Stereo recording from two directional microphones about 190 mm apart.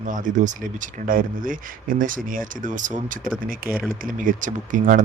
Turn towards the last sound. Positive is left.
turn(degrees=-45)  # may be behind; listen again after turning